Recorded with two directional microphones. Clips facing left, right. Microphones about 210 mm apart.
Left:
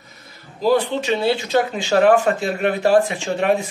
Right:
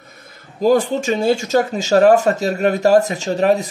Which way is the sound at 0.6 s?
45° right (ahead or behind).